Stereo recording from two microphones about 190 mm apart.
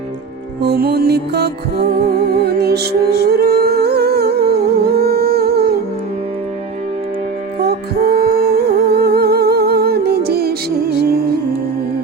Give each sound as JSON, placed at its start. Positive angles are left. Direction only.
{"t": 0.6, "sound": "music", "side_deg": -60}
{"t": 3.2, "sound": "humming", "side_deg": -55}
{"t": 7.7, "sound": "music", "side_deg": -55}